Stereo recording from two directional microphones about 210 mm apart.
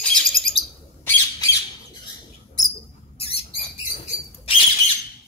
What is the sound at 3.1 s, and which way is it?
Rodents, 25° left (ahead or behind).